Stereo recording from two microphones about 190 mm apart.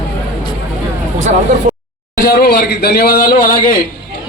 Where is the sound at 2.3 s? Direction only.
55° left (ahead or behind).